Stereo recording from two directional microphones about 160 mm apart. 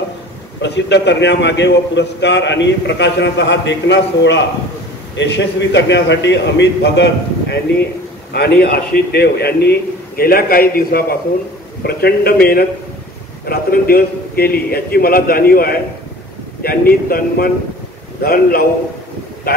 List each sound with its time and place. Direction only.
0.6 s a man's voice: 90° left; by 18.6 s 65° left (ahead or behind)